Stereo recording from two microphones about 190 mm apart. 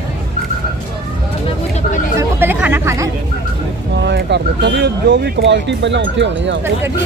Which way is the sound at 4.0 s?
65° right (ahead or behind).